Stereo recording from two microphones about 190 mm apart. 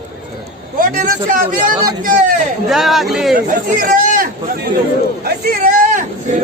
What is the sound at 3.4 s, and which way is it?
Speech, 45° right (ahead or behind).